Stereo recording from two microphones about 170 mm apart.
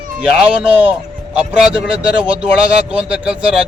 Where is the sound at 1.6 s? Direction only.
5° right (ahead or behind).